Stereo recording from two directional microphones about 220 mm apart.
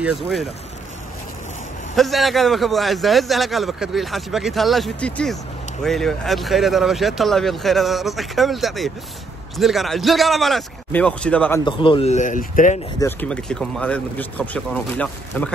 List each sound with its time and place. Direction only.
0.0 s a man's voice: centre (ahead or behind)
2.0 s a man's voice: centre (ahead or behind)
11.6 s speech: 20° left (ahead or behind)
13.0 s a man's voice: 5° left (ahead or behind)